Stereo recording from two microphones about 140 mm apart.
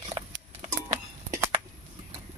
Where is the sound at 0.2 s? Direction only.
40° right (ahead or behind).